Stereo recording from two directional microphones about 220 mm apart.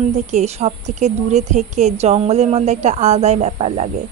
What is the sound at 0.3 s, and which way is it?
A woman's voice, 30° right (ahead or behind).